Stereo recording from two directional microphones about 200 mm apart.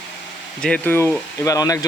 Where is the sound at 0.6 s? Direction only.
5° left (ahead or behind).